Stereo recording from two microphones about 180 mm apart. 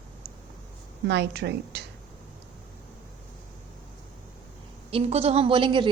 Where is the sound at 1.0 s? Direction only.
70° right (ahead or behind).